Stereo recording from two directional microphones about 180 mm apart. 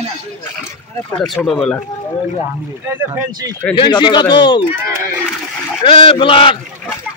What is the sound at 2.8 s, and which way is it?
Speech, 15° right (ahead or behind).